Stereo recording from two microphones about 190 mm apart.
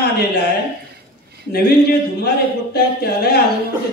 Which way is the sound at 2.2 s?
55° left (ahead or behind).